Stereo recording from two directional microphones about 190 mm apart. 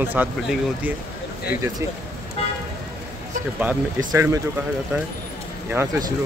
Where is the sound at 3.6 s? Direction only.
10° right (ahead or behind).